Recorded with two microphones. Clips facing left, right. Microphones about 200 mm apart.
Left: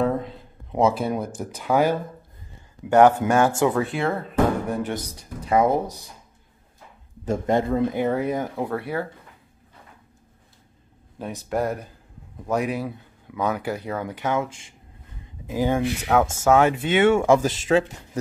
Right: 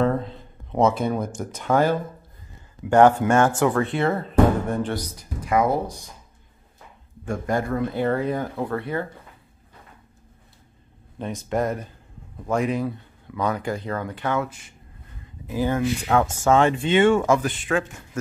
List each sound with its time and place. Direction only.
0.0 s a sound: 5° left (ahead or behind)
1.4 s speech: 5° left (ahead or behind)
2.8 s speech: 25° left (ahead or behind)
3.3 s speech: 10° left (ahead or behind)
4.9 s speech: 30° left (ahead or behind)
7.2 s speech: 25° left (ahead or behind)
11.4 s speech: 5° left (ahead or behind)
17.7 s speech: 25° left (ahead or behind)